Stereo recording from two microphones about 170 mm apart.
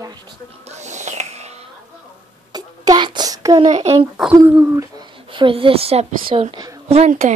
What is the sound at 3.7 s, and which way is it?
Speech, 40° right (ahead or behind).